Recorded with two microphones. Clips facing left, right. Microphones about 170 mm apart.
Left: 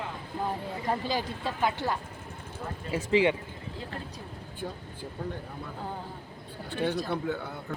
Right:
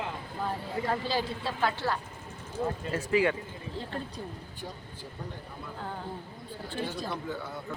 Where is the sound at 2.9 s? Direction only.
20° left (ahead or behind).